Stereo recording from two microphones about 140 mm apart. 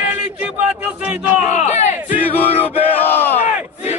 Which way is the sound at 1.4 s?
55° left (ahead or behind).